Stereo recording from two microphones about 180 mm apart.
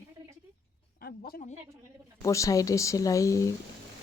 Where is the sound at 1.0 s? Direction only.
55° left (ahead or behind).